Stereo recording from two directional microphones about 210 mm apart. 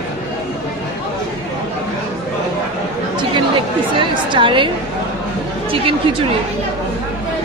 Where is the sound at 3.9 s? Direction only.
25° right (ahead or behind).